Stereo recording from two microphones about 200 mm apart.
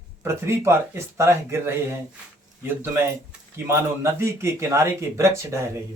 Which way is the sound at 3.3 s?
10° right (ahead or behind).